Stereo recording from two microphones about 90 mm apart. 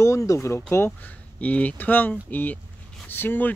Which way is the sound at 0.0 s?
35° left (ahead or behind).